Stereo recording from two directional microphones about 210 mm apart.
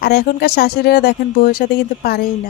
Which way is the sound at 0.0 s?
45° left (ahead or behind).